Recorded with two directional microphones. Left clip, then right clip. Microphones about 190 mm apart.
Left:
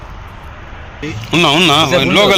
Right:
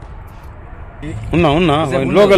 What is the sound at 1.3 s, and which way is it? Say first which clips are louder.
Speech: left 3 dB; 30° right (ahead or behind).